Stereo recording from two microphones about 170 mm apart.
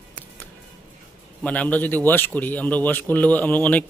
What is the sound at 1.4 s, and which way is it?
A man's voice, 10° left (ahead or behind).